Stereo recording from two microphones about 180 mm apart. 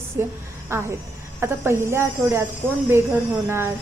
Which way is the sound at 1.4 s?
15° right (ahead or behind).